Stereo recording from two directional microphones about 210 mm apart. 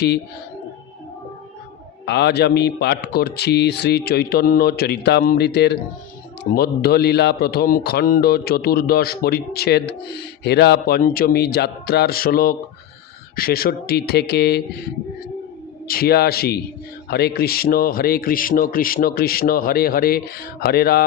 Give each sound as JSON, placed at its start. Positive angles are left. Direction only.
{"t": 2.0, "sound": "speech", "side_deg": 50}
{"t": 15.9, "sound": "speech", "side_deg": 45}